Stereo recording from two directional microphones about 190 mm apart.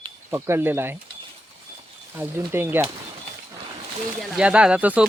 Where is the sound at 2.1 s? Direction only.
10° right (ahead or behind).